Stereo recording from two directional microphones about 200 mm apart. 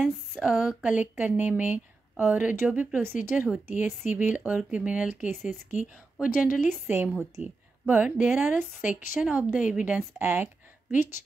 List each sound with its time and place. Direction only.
0.3 s a woman's voice: 5° right (ahead or behind)